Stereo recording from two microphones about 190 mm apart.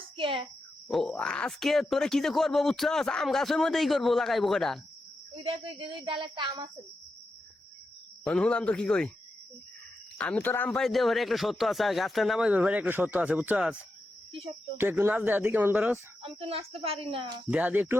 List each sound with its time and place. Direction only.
0.2 s speech: 25° right (ahead or behind)
0.9 s speech: centre (ahead or behind)
5.4 s speech: 25° right (ahead or behind)
8.3 s speech: 5° left (ahead or behind)
10.2 s speech: 5° left (ahead or behind); by 16.0 s 10° right (ahead or behind)
16.2 s speech: 30° right (ahead or behind)
17.5 s speech: 10° right (ahead or behind)